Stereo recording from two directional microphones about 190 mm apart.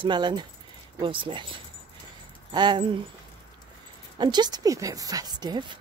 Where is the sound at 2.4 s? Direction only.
25° right (ahead or behind).